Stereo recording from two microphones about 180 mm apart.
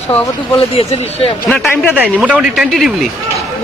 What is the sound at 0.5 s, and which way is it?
Speech, 30° left (ahead or behind).